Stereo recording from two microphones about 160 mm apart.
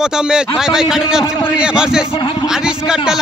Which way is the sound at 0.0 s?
5° right (ahead or behind).